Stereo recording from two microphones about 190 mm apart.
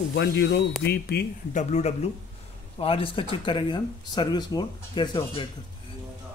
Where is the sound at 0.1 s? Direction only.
60° left (ahead or behind).